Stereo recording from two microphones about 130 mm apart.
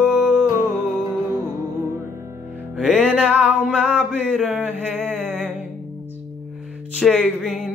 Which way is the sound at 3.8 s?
10° right (ahead or behind).